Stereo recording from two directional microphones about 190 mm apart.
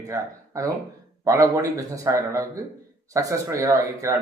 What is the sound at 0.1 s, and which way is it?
Speech, 15° right (ahead or behind).